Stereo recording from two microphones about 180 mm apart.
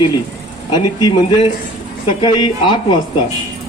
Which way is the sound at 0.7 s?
20° left (ahead or behind).